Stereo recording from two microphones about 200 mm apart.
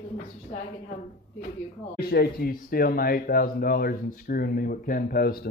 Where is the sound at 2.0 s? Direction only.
50° left (ahead or behind).